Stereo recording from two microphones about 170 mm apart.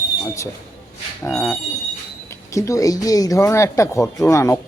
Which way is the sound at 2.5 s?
20° left (ahead or behind).